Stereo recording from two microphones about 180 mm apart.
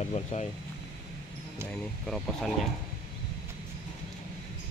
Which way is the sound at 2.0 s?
Centre (ahead or behind).